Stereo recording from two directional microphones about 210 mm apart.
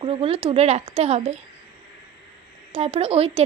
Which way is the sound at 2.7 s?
30° right (ahead or behind).